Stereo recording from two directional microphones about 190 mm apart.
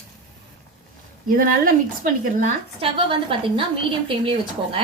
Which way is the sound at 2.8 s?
25° right (ahead or behind).